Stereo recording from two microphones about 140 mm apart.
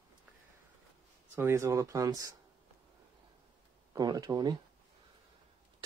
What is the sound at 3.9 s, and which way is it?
Speech, 25° right (ahead or behind).